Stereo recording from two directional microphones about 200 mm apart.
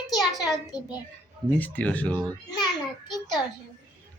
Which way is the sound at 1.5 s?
10° left (ahead or behind).